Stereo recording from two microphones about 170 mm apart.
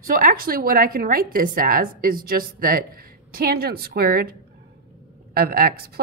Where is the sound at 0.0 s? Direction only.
55° right (ahead or behind).